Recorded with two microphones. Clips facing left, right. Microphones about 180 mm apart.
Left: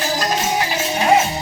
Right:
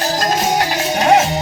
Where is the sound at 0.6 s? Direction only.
75° right (ahead or behind).